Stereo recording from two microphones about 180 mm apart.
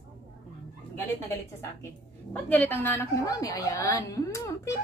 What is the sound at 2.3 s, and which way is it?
A woman's voice, 10° left (ahead or behind).